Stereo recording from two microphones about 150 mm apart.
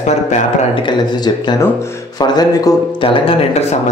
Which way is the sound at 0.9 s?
30° left (ahead or behind).